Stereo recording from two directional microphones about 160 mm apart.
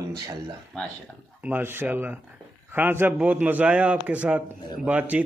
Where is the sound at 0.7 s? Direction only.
5° left (ahead or behind).